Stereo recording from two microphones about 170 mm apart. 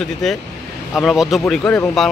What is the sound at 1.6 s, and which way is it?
Speech, 15° left (ahead or behind).